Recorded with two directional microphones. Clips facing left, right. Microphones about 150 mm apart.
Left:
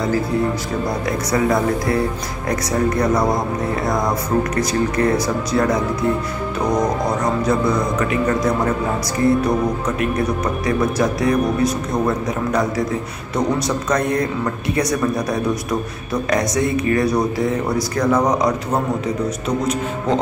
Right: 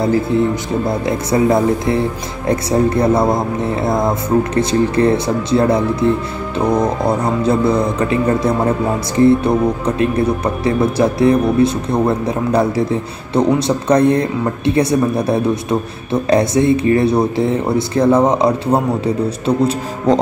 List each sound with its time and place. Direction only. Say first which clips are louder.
0.8 s speech: right 3 dB; 25° right (ahead or behind)